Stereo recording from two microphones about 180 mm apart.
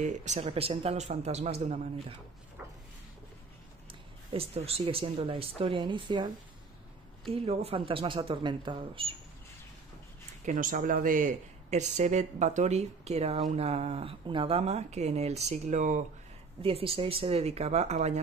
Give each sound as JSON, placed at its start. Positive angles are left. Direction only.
{"t": 0.0, "sound": "speech", "side_deg": -40}
{"t": 4.3, "sound": "speech", "side_deg": -35}
{"t": 10.4, "sound": "speech", "side_deg": -50}
{"t": 16.6, "sound": "speech", "side_deg": -30}